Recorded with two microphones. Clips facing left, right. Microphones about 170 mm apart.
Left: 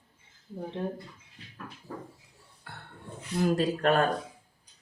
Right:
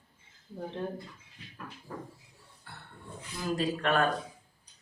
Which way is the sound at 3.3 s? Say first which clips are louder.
Left 5 dB; 45° left (ahead or behind).